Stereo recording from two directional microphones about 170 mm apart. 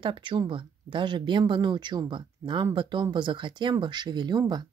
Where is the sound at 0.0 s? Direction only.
30° right (ahead or behind).